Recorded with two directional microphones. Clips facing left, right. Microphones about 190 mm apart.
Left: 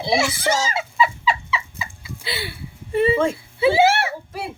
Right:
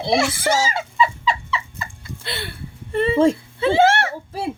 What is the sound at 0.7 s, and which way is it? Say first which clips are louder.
Fowl: right 1 dB; 5° left (ahead or behind).